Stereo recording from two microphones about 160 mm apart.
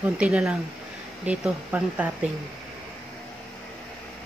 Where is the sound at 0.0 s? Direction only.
5° right (ahead or behind).